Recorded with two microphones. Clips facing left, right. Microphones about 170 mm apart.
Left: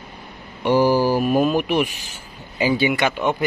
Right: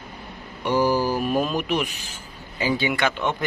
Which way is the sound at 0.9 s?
40° left (ahead or behind).